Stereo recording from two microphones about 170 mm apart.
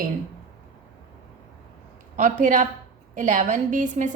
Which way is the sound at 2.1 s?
50° right (ahead or behind).